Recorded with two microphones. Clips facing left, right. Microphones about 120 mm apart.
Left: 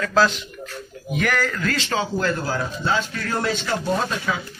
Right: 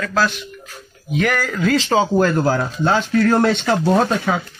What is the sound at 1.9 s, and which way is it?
Speech, 40° right (ahead or behind).